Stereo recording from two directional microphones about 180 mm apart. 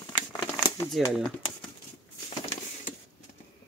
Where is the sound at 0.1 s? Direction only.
15° left (ahead or behind).